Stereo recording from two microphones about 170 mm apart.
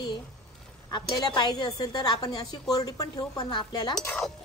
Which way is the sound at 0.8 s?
20° left (ahead or behind).